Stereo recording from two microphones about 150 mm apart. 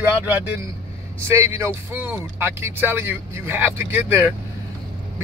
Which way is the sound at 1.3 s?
20° right (ahead or behind).